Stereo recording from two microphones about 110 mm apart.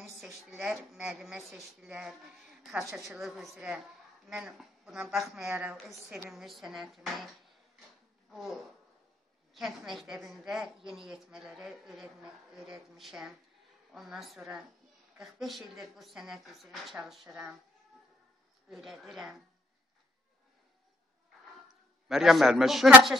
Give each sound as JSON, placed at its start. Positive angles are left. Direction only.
{"t": 0.2, "sound": "a woman's voice", "side_deg": -5}
{"t": 2.9, "sound": "a woman's voice", "side_deg": -25}
{"t": 3.2, "sound": "a man's voice", "side_deg": 0}
{"t": 8.3, "sound": "a sound", "side_deg": 0}
{"t": 9.5, "sound": "a man's voice", "side_deg": 0}
{"t": 18.7, "sound": "a man's voice", "side_deg": 0}
{"t": 22.0, "sound": "a man's voice", "side_deg": -5}